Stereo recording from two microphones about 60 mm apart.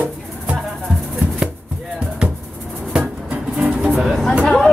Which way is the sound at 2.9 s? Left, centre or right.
Centre.